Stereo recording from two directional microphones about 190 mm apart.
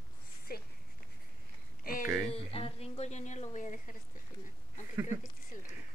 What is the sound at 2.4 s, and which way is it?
A woman's voice, 30° left (ahead or behind).